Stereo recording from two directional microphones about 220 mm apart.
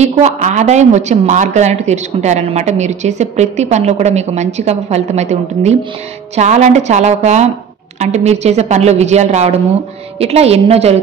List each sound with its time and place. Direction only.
0.0 s a woman's voice: 30° right (ahead or behind)